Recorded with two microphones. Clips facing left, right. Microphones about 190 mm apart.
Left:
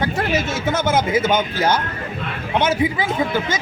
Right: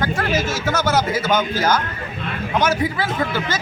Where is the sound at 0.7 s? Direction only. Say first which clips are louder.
Left 2 dB; 25° left (ahead or behind).